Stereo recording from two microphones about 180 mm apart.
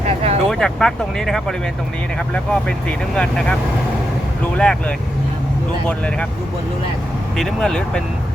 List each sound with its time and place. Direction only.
0.0 s vehicle: 35° right (ahead or behind)
0.4 s speech: 5° left (ahead or behind)
4.5 s speech: 5° left (ahead or behind)
7.3 s speech: centre (ahead or behind)